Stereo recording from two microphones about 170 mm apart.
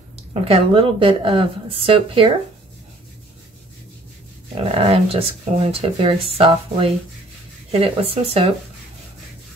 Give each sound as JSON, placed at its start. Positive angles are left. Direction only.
{"t": 0.3, "sound": "speech", "side_deg": -35}
{"t": 4.6, "sound": "speech", "side_deg": -35}